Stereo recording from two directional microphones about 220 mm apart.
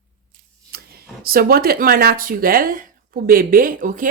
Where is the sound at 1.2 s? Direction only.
40° right (ahead or behind).